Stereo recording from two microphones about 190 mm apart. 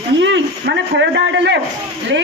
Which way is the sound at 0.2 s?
70° right (ahead or behind).